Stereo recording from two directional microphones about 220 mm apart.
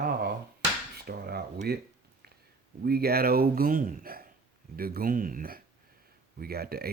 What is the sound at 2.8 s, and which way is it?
Speech, 45° right (ahead or behind).